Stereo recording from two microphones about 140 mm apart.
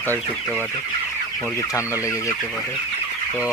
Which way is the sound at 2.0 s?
20° left (ahead or behind).